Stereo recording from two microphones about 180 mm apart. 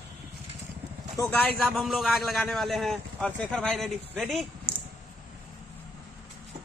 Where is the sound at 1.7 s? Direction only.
Centre (ahead or behind).